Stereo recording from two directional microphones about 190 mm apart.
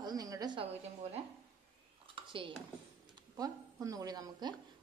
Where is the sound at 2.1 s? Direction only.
25° right (ahead or behind).